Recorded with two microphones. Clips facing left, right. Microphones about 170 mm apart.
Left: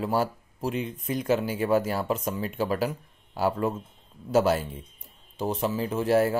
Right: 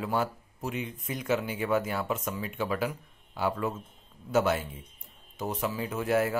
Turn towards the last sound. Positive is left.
turn(degrees=30)  # may be behind; listen again after turning